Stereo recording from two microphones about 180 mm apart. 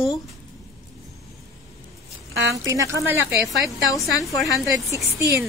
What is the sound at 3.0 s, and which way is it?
Speech, 5° right (ahead or behind).